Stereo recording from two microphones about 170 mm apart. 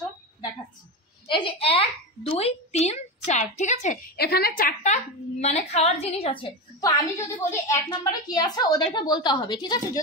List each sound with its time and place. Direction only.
1.3 s a woman's voice: 30° left (ahead or behind)
4.2 s a woman's voice: 65° left (ahead or behind); by 6.9 s 30° left (ahead or behind)
6.9 s a woman's voice: 20° left (ahead or behind)